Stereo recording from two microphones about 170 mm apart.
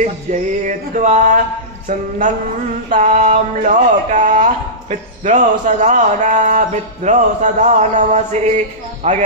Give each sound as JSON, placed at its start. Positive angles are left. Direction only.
{"t": 0.0, "sound": "speech", "side_deg": -50}